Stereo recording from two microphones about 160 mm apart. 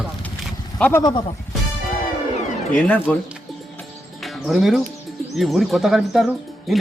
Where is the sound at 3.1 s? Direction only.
10° left (ahead or behind).